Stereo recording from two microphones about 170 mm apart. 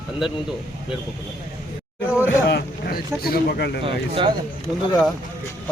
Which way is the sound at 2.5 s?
70° left (ahead or behind).